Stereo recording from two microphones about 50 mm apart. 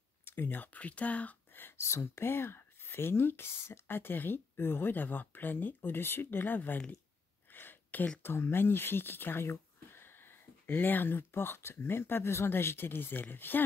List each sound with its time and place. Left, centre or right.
0.2 s speech: left
1.8 s speech: left
7.5 s a sound: left
8.2 s speech: left